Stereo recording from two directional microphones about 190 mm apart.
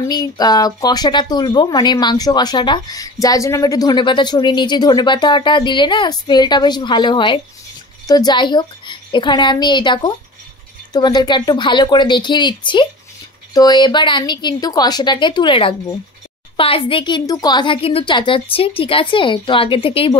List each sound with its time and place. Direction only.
0.0 s speech: 20° left (ahead or behind)